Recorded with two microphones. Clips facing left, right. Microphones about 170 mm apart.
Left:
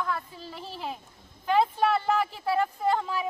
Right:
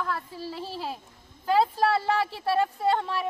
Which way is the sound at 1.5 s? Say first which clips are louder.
Right 1 dB; 5° right (ahead or behind).